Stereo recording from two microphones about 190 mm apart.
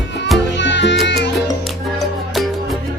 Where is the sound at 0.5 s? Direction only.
70° left (ahead or behind).